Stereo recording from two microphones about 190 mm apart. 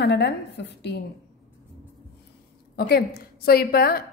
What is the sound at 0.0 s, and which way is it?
A woman's voice, 65° left (ahead or behind).